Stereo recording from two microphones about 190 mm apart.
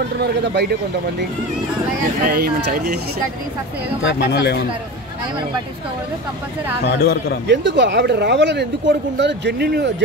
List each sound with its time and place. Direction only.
0.2 s speech: 60° right (ahead or behind)
2.2 s speech: 55° right (ahead or behind)
4.0 s speech: 70° left (ahead or behind)
6.8 s speech: 60° left (ahead or behind)
7.4 s speech: 70° right (ahead or behind)